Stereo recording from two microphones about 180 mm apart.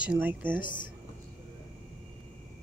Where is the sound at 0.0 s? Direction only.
5° right (ahead or behind).